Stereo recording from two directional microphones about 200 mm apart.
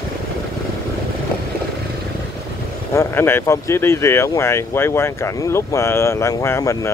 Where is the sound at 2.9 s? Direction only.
10° left (ahead or behind).